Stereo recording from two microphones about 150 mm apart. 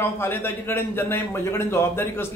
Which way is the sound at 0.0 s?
15° left (ahead or behind).